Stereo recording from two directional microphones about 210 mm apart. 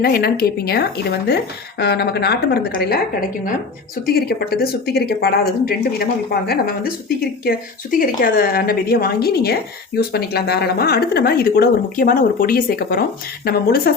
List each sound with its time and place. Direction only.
0.0 s a woman's voice: 45° left (ahead or behind)
7.4 s a woman's voice: 40° left (ahead or behind)